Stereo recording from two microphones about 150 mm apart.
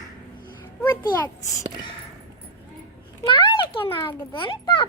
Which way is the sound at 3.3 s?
35° left (ahead or behind).